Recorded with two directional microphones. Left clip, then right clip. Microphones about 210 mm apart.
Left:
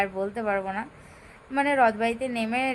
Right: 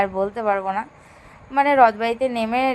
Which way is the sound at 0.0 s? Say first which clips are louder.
Right 6 dB; 15° right (ahead or behind).